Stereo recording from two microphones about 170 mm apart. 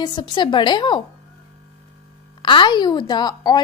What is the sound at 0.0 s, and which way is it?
A woman's voice, 25° left (ahead or behind).